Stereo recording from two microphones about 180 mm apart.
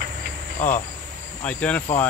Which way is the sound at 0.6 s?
45° left (ahead or behind).